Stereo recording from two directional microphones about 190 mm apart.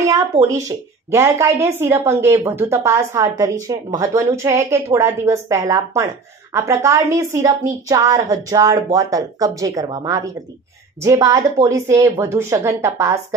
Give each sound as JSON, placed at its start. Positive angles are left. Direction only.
{"t": 0.0, "sound": "a woman's voice", "side_deg": -15}